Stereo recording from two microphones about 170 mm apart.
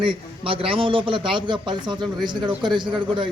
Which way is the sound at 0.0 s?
30° right (ahead or behind).